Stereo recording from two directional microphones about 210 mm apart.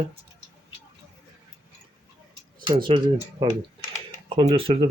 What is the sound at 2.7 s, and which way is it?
Speech, 25° right (ahead or behind).